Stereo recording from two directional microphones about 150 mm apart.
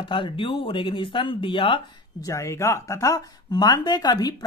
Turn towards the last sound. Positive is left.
turn(degrees=25)  # may be behind; listen again after turning